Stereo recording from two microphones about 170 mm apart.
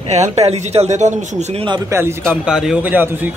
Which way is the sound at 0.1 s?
40° right (ahead or behind).